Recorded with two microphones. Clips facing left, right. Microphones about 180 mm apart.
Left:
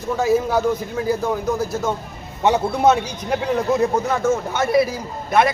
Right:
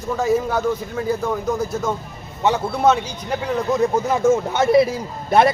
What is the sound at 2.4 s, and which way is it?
Speech, 15° left (ahead or behind).